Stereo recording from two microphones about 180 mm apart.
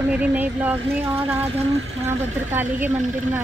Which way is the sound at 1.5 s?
40° right (ahead or behind).